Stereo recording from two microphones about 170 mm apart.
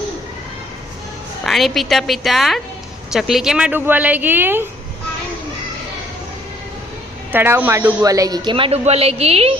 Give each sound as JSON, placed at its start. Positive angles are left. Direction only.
{"t": 1.5, "sound": "a woman's voice", "side_deg": 0}
{"t": 7.3, "sound": "a woman's voice", "side_deg": -10}
{"t": 8.0, "sound": "a woman's voice", "side_deg": -20}